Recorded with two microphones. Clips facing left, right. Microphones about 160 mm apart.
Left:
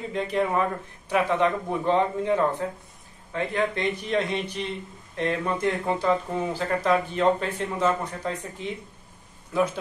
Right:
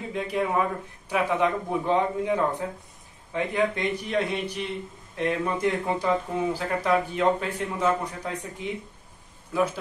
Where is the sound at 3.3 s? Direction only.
10° right (ahead or behind).